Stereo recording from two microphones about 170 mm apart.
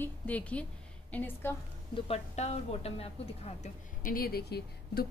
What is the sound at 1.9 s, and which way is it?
A woman's voice, 40° left (ahead or behind).